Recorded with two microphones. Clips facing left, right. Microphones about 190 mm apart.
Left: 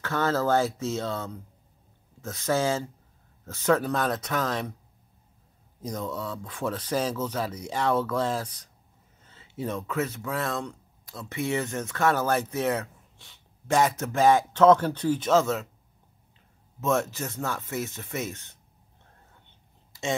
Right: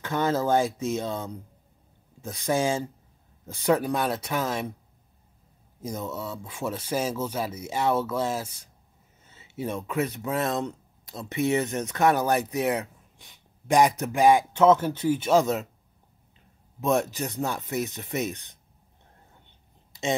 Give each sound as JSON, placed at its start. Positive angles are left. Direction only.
{"t": 0.0, "sound": "speech", "side_deg": -15}
{"t": 6.0, "sound": "speech", "side_deg": -10}
{"t": 16.8, "sound": "speech", "side_deg": -15}
{"t": 19.9, "sound": "a sound", "side_deg": -20}